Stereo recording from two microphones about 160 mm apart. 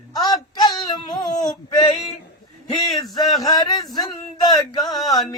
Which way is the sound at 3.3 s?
25° left (ahead or behind).